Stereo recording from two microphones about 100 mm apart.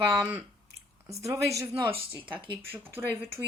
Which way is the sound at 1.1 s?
30° right (ahead or behind).